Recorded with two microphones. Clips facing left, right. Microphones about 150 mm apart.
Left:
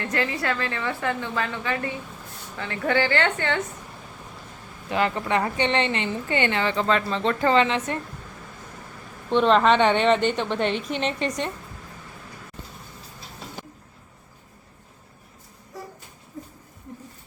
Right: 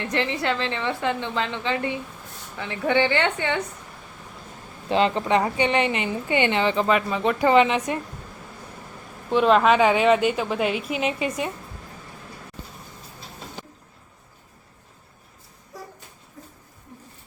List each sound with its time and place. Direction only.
0.0 s a woman's voice: 20° right (ahead or behind)
4.9 s a woman's voice: 20° right (ahead or behind)
9.3 s a woman's voice: 5° right (ahead or behind)